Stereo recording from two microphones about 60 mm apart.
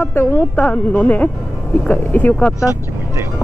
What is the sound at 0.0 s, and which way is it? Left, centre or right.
Speech, left.